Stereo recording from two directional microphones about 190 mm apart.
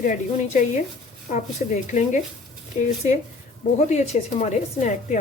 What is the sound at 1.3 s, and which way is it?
Speech, 40° left (ahead or behind).